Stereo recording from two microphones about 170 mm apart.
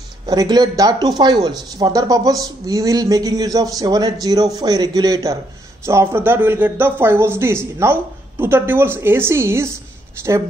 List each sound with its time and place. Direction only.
0.3 s speech: 25° right (ahead or behind)